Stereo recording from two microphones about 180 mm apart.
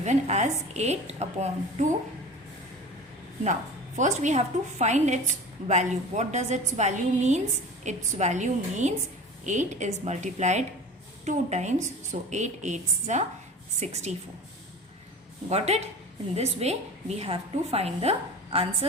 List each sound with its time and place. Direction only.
0.0 s a woman's voice: 40° right (ahead or behind)
3.4 s a woman's voice: 40° right (ahead or behind)
15.4 s a woman's voice: 35° right (ahead or behind)